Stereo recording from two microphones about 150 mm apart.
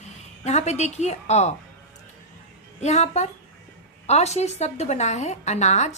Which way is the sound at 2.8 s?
50° left (ahead or behind).